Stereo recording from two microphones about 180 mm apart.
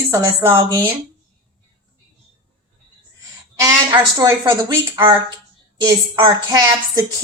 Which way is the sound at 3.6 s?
20° right (ahead or behind).